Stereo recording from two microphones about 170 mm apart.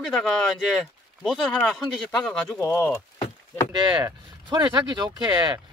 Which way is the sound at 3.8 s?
25° right (ahead or behind).